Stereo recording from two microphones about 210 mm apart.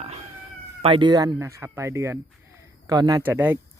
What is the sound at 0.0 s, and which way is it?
Cat, 30° right (ahead or behind).